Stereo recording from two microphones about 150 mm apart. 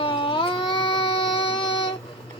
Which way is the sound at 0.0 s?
35° left (ahead or behind).